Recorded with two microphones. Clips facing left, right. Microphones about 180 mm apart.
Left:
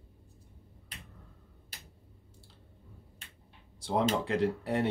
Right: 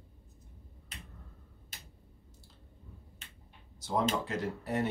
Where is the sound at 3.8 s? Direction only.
30° left (ahead or behind).